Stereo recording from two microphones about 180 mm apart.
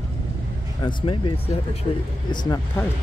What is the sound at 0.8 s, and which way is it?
Speech, 25° left (ahead or behind).